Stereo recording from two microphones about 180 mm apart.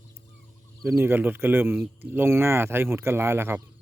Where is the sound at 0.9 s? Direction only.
15° right (ahead or behind).